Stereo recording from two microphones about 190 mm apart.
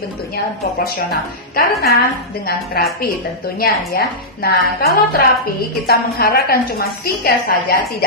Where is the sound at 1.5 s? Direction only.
55° left (ahead or behind).